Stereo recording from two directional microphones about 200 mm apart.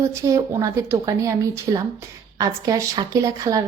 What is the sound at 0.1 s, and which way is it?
Speech, 15° right (ahead or behind).